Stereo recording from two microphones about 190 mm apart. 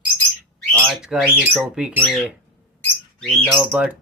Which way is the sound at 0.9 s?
5° right (ahead or behind).